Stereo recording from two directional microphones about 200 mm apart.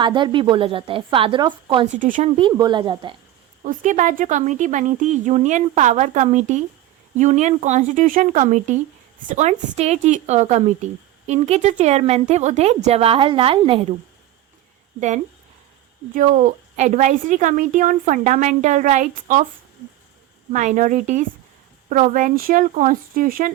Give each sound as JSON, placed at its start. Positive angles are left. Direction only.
{"t": 0.0, "sound": "a woman's voice", "side_deg": -25}
{"t": 2.0, "sound": "a woman's voice", "side_deg": -40}
{"t": 2.3, "sound": "a woman's voice", "side_deg": -20}
{"t": 3.6, "sound": "a woman's voice", "side_deg": -40}
{"t": 16.1, "sound": "a woman's voice", "side_deg": -40}
{"t": 20.5, "sound": "a woman's voice", "side_deg": -35}